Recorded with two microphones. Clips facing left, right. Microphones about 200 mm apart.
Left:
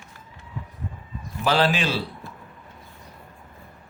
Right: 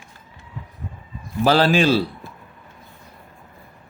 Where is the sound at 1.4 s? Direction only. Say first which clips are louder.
Right 6 dB; 35° right (ahead or behind).